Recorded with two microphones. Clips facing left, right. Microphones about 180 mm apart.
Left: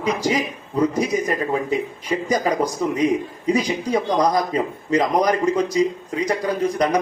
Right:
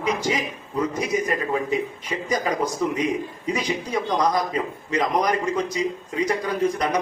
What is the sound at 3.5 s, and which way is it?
A man's voice, 35° left (ahead or behind).